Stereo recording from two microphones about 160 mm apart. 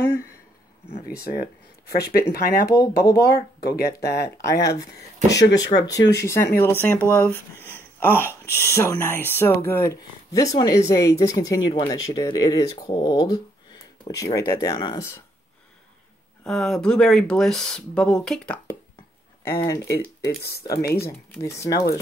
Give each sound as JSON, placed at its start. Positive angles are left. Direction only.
{"t": 0.8, "sound": "speech", "side_deg": 80}
{"t": 5.3, "sound": "speech", "side_deg": 20}
{"t": 16.4, "sound": "speech", "side_deg": 5}
{"t": 19.4, "sound": "speech", "side_deg": 20}
{"t": 20.8, "sound": "speech", "side_deg": 75}
{"t": 21.4, "sound": "speech", "side_deg": 20}